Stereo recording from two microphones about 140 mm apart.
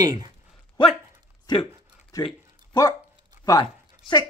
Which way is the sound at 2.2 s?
30° left (ahead or behind).